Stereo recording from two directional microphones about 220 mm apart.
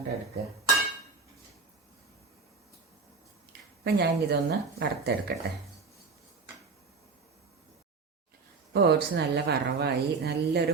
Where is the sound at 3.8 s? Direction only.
45° right (ahead or behind).